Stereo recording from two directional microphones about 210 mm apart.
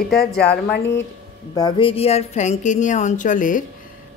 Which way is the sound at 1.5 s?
20° left (ahead or behind).